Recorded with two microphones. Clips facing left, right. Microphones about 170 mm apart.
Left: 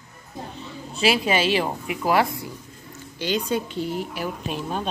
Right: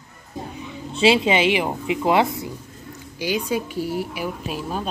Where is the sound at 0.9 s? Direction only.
25° right (ahead or behind).